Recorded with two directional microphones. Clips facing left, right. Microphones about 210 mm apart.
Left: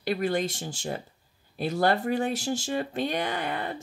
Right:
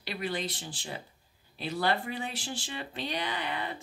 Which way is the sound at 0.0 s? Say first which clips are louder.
Left 8 dB; 45° left (ahead or behind).